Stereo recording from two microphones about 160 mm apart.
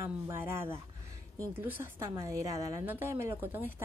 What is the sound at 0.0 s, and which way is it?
A woman's voice, 15° right (ahead or behind).